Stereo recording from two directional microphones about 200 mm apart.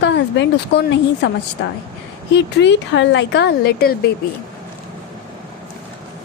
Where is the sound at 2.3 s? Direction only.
65° left (ahead or behind).